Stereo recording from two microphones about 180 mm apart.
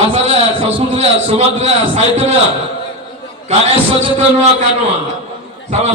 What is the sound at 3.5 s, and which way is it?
Speech, 35° right (ahead or behind).